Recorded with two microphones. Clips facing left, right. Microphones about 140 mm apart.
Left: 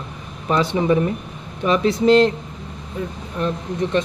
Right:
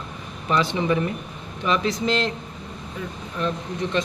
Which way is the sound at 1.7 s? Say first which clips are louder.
Left 7 dB; 50° left (ahead or behind).